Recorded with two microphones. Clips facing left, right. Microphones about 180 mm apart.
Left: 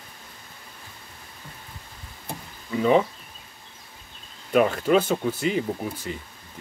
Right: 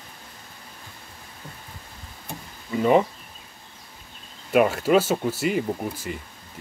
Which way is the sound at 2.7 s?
5° right (ahead or behind).